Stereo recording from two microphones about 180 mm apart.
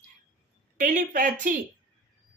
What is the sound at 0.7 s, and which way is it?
Speech, 45° right (ahead or behind).